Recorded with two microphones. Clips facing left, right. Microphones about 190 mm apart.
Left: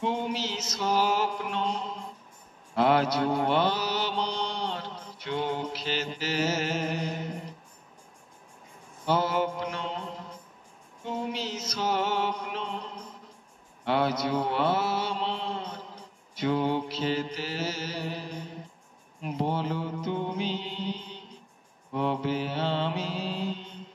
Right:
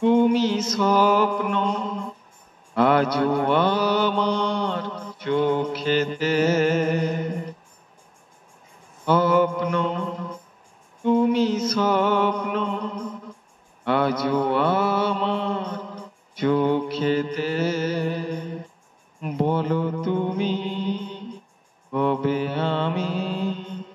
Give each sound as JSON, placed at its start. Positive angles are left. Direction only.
{"t": 0.0, "sound": "mantra", "side_deg": -50}
{"t": 9.0, "sound": "mantra", "side_deg": -55}
{"t": 11.1, "sound": "music", "side_deg": -50}
{"t": 13.8, "sound": "mantra", "side_deg": -55}
{"t": 19.2, "sound": "music", "side_deg": -50}
{"t": 21.9, "sound": "mantra", "side_deg": -55}